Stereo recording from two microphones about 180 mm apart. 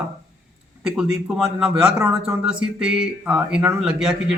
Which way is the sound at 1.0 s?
5° right (ahead or behind).